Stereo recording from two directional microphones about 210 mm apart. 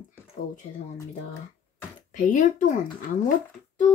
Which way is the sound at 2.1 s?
35° left (ahead or behind).